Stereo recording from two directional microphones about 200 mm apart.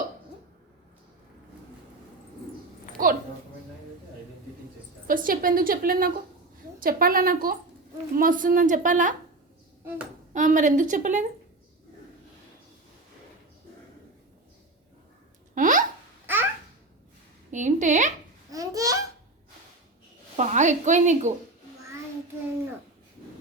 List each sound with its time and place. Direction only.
3.0 s a woman's voice: 45° right (ahead or behind)
5.0 s a woman's voice: 45° right (ahead or behind)
10.3 s a woman's voice: 40° right (ahead or behind)
15.5 s a sound: 40° right (ahead or behind)
16.2 s babbling: 10° right (ahead or behind)
17.5 s a sound: 40° right (ahead or behind)
18.5 s babbling: 15° right (ahead or behind)
20.3 s a woman's voice: 35° right (ahead or behind)